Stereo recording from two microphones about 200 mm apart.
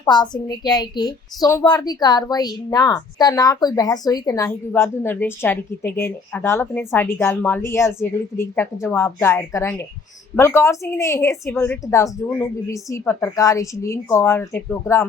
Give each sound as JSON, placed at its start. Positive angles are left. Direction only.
{"t": 0.0, "sound": "a woman's voice", "side_deg": 20}